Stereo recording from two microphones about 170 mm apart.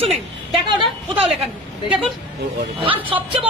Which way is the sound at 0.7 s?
35° right (ahead or behind).